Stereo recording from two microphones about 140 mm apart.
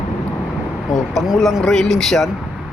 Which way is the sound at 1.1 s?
Centre (ahead or behind).